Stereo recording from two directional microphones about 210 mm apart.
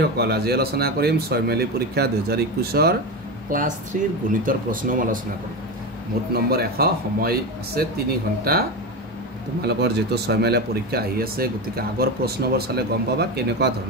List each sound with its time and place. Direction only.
0.0 s speech: 50° right (ahead or behind)
6.3 s speech: 45° right (ahead or behind)